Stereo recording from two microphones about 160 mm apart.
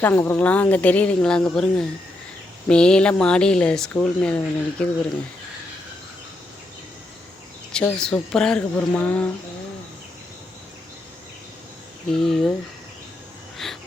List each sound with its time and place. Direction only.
0.0 s speech: 10° left (ahead or behind)
7.7 s speech: 5° left (ahead or behind)
12.2 s speech: centre (ahead or behind)
13.6 s cricket: centre (ahead or behind)